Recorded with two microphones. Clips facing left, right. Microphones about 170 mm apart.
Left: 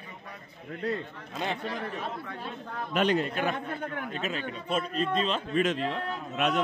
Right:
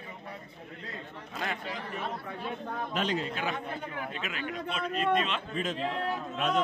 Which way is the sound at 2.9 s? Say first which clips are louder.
Left 7 dB; 60° left (ahead or behind).